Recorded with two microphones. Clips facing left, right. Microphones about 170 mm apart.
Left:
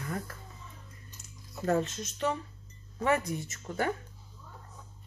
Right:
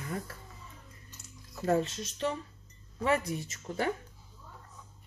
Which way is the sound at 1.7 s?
30° right (ahead or behind).